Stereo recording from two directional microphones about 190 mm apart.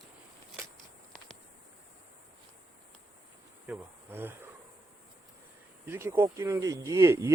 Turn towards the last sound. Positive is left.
turn(degrees=-15)  # may be behind; listen again after turning